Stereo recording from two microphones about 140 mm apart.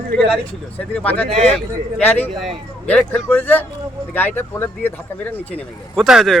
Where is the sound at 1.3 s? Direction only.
50° right (ahead or behind).